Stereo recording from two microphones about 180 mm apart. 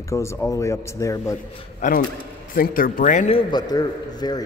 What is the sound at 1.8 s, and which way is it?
A man's voice, 45° left (ahead or behind).